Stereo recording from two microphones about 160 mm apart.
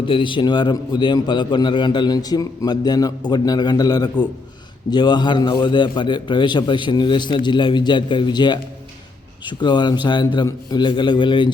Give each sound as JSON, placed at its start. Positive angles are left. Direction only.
{"t": 0.0, "sound": "a man's voice", "side_deg": 30}